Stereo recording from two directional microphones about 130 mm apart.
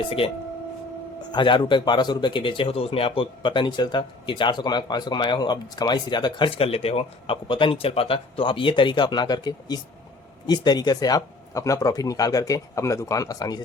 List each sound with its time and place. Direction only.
0.2 s speech: 45° left (ahead or behind); by 13.6 s 30° left (ahead or behind)